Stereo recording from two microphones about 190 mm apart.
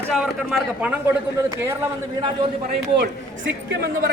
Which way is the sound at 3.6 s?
60° right (ahead or behind).